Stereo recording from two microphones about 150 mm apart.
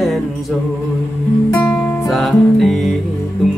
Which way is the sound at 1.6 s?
10° left (ahead or behind).